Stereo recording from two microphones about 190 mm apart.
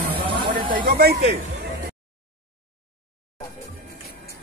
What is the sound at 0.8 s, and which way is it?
Speech, 55° right (ahead or behind).